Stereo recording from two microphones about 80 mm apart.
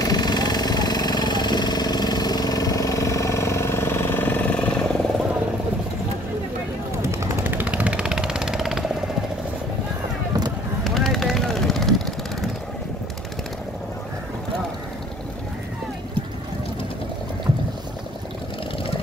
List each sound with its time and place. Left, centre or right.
0.0 s vehicle: left; by 4.9 s centre
7.0 s a sound: right
7.4 s vehicle: centre
10.8 s vehicle: centre